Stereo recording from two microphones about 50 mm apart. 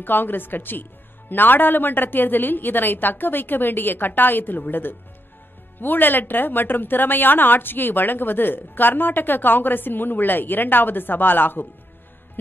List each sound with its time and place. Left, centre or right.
0.0 s a woman's voice: left